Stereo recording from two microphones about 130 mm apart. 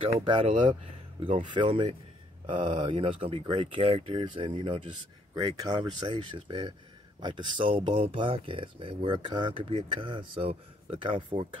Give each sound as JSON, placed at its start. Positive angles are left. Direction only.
{"t": 0.0, "sound": "speech", "side_deg": -40}